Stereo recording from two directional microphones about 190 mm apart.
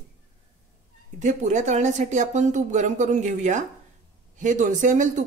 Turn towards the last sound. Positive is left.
turn(degrees=-40)  # may be behind; listen again after turning